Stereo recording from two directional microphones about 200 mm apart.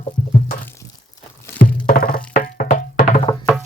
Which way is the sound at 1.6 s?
45° left (ahead or behind).